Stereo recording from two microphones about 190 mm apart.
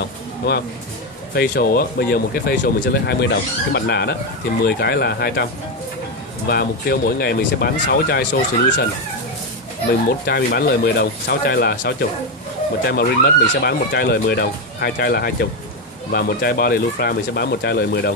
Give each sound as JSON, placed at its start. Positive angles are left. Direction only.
{"t": 0.4, "sound": "speech", "side_deg": 60}
{"t": 10.0, "sound": "speech", "side_deg": 55}